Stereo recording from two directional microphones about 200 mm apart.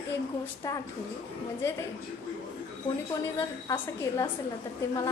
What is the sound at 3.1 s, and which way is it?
A woman's voice, 15° left (ahead or behind).